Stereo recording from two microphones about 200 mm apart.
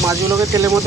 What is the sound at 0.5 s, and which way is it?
Speech, 15° right (ahead or behind).